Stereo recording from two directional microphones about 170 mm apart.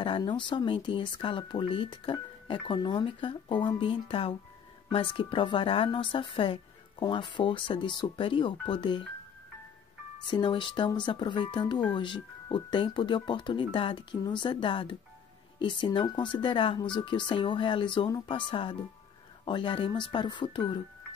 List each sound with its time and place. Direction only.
0.0 s speech: 30° left (ahead or behind)
10.1 s speech: 25° left (ahead or behind)